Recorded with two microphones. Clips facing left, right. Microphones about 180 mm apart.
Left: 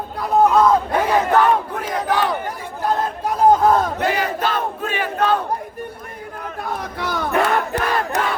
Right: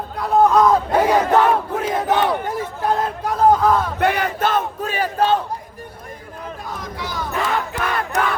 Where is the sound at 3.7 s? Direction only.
40° left (ahead or behind).